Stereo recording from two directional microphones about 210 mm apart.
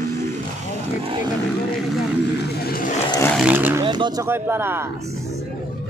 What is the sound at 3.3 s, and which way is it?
Roaring cats, 5° right (ahead or behind).